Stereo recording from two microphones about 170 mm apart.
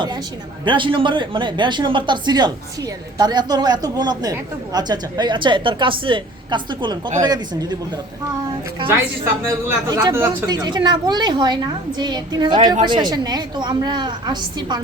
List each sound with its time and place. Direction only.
0.6 s speech: 30° right (ahead or behind)
8.9 s speech: 15° right (ahead or behind)